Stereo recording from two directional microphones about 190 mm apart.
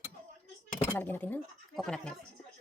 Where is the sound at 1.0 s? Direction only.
10° left (ahead or behind).